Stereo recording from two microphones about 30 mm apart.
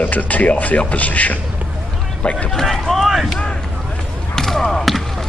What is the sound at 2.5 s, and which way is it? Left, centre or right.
Speech, centre.